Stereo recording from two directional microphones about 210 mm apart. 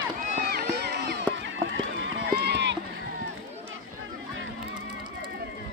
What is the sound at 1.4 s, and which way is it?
Run, 60° right (ahead or behind).